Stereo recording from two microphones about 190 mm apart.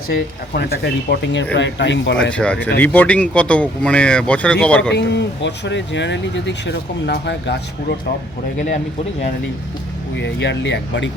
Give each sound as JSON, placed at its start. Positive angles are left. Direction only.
{"t": 0.1, "sound": "speech", "side_deg": 55}
{"t": 2.3, "sound": "speech", "side_deg": 5}
{"t": 4.9, "sound": "speech", "side_deg": 65}
{"t": 10.2, "sound": "speech", "side_deg": 65}